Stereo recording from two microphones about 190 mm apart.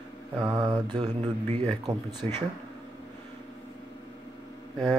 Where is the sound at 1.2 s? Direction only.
35° right (ahead or behind).